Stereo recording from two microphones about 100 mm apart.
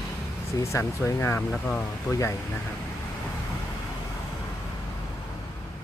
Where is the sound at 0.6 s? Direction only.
30° left (ahead or behind).